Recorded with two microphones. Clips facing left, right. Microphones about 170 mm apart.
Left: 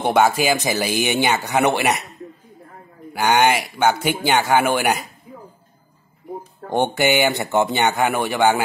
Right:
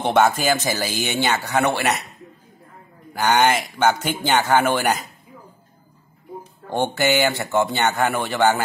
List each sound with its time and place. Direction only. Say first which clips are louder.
0.0 s speech: left 1 dB; 10° left (ahead or behind)
3.1 s speech: left 1 dB; 10° left (ahead or behind)
6.7 s speech: left 2 dB; 15° left (ahead or behind)